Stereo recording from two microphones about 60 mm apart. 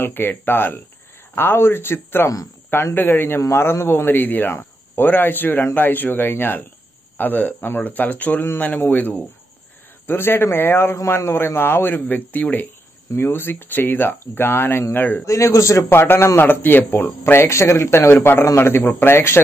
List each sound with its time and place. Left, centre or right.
0.0 s speech: left
15.2 s a man's voice: left
15.9 s a man's voice: left